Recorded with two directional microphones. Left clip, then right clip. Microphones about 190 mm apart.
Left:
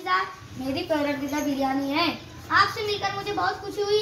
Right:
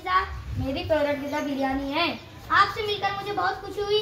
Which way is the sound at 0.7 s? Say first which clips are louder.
Right 2 dB; 10° right (ahead or behind).